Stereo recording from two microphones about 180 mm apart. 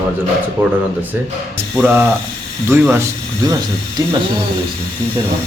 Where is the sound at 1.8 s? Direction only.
10° right (ahead or behind).